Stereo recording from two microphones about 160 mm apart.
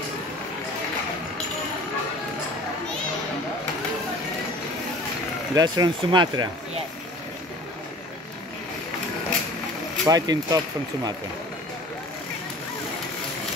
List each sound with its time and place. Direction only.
5.5 s speech: 25° right (ahead or behind)
10.0 s speech: 25° right (ahead or behind)